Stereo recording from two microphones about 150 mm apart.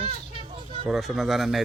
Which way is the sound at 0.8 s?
Centre (ahead or behind).